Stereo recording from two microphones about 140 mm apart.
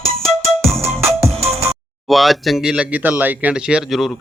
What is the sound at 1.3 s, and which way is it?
Music, 45° right (ahead or behind).